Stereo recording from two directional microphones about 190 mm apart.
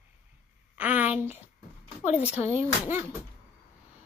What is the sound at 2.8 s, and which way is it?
Speech, 10° right (ahead or behind).